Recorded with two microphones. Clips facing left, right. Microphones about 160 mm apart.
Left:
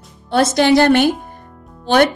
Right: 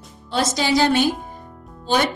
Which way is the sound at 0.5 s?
60° left (ahead or behind).